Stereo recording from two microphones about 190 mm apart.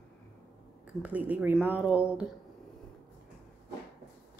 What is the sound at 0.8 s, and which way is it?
Speech, 5° right (ahead or behind).